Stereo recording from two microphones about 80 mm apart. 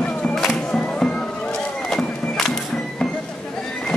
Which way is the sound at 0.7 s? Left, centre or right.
Centre.